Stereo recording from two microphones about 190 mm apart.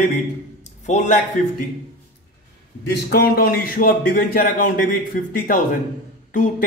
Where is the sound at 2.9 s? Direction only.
50° left (ahead or behind).